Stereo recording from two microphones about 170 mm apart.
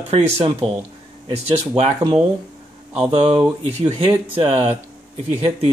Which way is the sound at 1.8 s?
40° right (ahead or behind).